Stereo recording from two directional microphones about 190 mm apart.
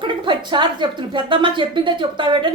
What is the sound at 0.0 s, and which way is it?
A woman's voice, 25° right (ahead or behind).